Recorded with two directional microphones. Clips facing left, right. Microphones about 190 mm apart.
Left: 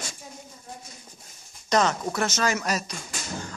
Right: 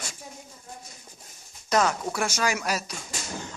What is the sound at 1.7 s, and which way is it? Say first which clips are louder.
Speech: left 1 dB; 5° right (ahead or behind).